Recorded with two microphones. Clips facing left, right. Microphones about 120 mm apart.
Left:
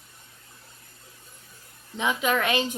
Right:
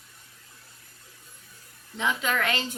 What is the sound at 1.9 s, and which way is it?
Speech, 15° left (ahead or behind).